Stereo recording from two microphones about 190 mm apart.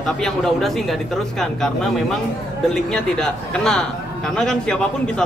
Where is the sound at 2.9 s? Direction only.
5° left (ahead or behind).